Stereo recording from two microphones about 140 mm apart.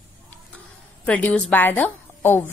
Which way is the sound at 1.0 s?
10° left (ahead or behind).